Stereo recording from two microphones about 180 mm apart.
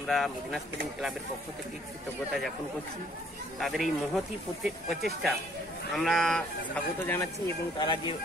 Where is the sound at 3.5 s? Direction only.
Centre (ahead or behind).